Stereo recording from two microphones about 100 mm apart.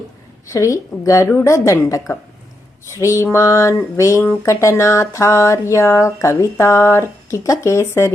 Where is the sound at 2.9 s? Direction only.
30° left (ahead or behind).